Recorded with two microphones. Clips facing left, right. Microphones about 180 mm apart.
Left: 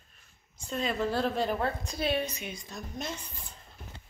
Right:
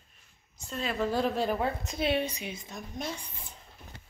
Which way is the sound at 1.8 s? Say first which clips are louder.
Right 1 dB; 25° right (ahead or behind).